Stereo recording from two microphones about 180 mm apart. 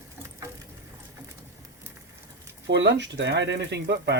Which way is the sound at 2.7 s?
75° right (ahead or behind).